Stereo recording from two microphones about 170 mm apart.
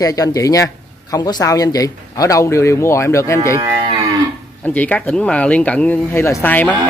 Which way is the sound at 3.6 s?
15° right (ahead or behind).